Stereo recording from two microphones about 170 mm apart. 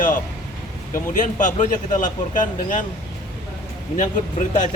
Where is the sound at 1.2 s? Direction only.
50° left (ahead or behind).